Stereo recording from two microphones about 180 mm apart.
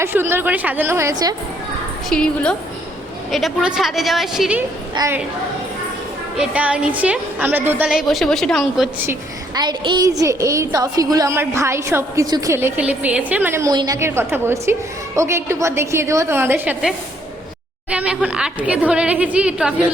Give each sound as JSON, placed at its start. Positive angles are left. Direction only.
{"t": 0.0, "sound": "a woman's voice", "side_deg": -10}
{"t": 2.0, "sound": "a woman's voice", "side_deg": 5}
{"t": 4.9, "sound": "a woman's voice", "side_deg": -15}
{"t": 6.3, "sound": "a woman's voice", "side_deg": -5}
{"t": 9.6, "sound": "a woman's voice", "side_deg": -25}
{"t": 17.9, "sound": "a woman's voice", "side_deg": -5}